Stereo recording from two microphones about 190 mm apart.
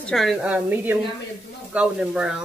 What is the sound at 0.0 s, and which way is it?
Speech, centre (ahead or behind).